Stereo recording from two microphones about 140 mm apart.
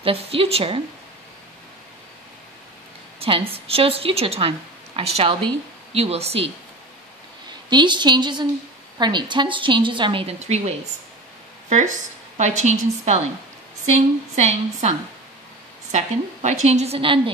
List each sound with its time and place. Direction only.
0.0 s a woman's voice: 40° right (ahead or behind)
3.2 s a sound: 40° right (ahead or behind)
3.5 s a woman's voice: 45° right (ahead or behind)
7.7 s a woman's voice: 35° right (ahead or behind)
10.4 s a woman's voice: 55° right (ahead or behind)
12.4 s a woman's voice: 55° right (ahead or behind)